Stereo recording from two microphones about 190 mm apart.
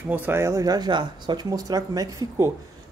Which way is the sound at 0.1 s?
10° right (ahead or behind).